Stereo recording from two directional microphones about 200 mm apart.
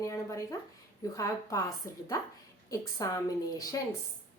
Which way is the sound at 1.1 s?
15° left (ahead or behind).